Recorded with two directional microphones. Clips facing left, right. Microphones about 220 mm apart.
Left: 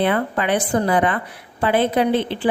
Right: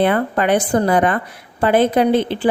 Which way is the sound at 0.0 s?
45° right (ahead or behind).